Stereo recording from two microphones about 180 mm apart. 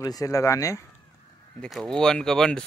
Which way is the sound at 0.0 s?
20° left (ahead or behind).